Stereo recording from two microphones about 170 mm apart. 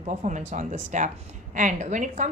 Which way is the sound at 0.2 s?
45° right (ahead or behind).